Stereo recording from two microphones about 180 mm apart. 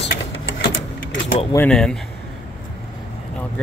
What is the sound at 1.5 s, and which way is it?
Speech, 5° left (ahead or behind).